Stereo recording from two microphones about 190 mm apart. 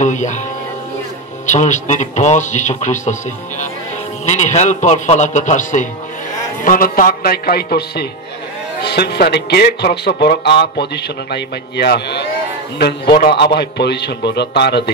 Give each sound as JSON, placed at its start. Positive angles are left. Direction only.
{"t": 0.0, "sound": "speech", "side_deg": 40}
{"t": 1.4, "sound": "speech", "side_deg": 40}